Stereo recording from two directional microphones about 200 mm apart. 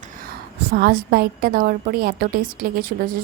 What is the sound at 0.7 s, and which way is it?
A woman's voice, 50° right (ahead or behind).